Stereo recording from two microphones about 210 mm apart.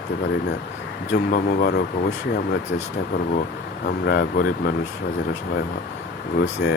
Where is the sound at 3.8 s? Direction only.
45° left (ahead or behind).